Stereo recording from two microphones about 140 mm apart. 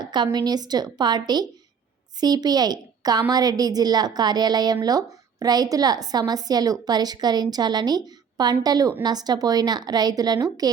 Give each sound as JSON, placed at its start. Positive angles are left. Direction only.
{"t": 0.0, "sound": "a woman's voice", "side_deg": -30}